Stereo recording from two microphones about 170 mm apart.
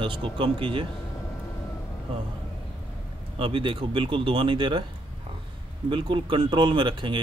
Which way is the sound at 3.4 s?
30° right (ahead or behind).